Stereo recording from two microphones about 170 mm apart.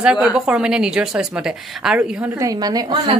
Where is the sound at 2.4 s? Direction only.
20° right (ahead or behind).